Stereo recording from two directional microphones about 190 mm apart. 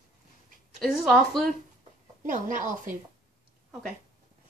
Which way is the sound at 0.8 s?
Centre (ahead or behind).